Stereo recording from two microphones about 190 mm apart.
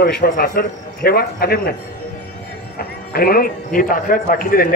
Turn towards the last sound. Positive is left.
turn(degrees=50)  # may be behind; listen again after turning